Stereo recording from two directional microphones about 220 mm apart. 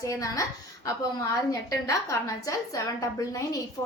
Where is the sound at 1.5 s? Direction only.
15° left (ahead or behind).